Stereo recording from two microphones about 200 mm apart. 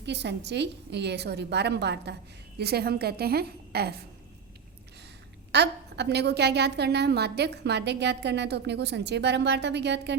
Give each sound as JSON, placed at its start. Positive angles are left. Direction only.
{"t": 0.0, "sound": "a woman's voice", "side_deg": -60}
{"t": 5.5, "sound": "a woman's voice", "side_deg": -60}